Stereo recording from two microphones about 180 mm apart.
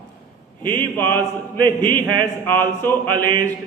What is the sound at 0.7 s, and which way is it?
Speech, 10° left (ahead or behind).